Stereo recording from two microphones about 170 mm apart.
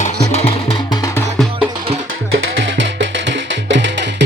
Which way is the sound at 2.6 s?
90° right.